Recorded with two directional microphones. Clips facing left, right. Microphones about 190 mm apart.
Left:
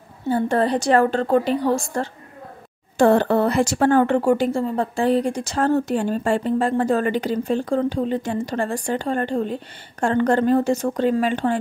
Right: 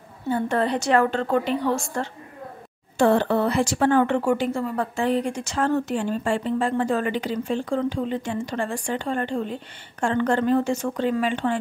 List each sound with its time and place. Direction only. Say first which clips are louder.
0.3 s a woman's voice: left 3 dB; 35° left (ahead or behind)